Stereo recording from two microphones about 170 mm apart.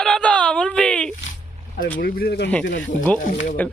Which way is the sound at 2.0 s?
65° left (ahead or behind).